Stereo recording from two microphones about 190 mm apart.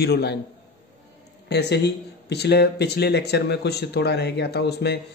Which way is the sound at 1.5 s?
60° left (ahead or behind).